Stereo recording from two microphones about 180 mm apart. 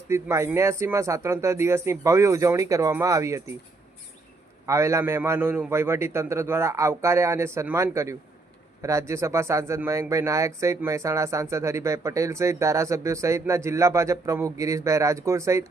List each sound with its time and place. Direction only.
0.1 s speech: 15° right (ahead or behind)
4.6 s speech: 15° right (ahead or behind)